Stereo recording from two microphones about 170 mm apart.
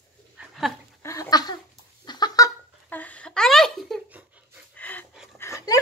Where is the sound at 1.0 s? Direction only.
20° left (ahead or behind).